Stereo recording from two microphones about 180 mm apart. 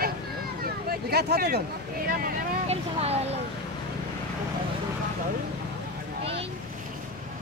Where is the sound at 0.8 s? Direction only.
60° right (ahead or behind).